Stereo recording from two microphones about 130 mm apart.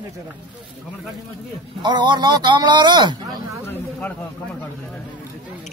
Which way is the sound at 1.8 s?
35° right (ahead or behind).